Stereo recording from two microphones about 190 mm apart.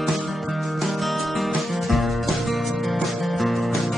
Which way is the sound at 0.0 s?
Centre (ahead or behind).